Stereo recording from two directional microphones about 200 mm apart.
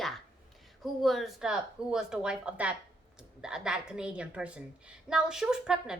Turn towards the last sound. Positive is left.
turn(degrees=-5)  # may be behind; listen again after turning